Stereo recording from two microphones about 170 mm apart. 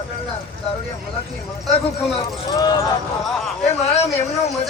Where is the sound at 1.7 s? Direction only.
35° left (ahead or behind).